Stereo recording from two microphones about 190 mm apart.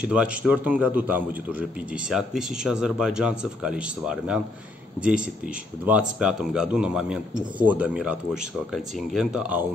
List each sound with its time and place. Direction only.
0.0 s a man's voice: 5° right (ahead or behind)